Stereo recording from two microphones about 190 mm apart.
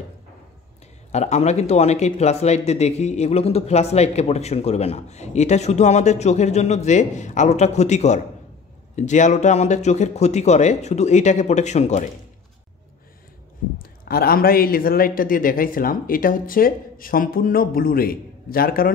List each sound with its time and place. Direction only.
1.1 s speech: 35° left (ahead or behind)
13.7 s speech: 50° left (ahead or behind)